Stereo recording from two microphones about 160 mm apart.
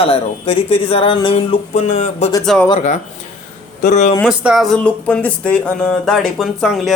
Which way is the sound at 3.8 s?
45° left (ahead or behind).